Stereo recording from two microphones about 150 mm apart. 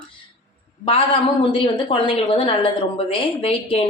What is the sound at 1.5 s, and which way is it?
A woman's voice, 35° left (ahead or behind).